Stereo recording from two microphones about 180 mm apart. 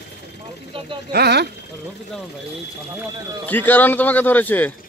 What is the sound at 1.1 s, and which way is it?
Speech, 65° right (ahead or behind).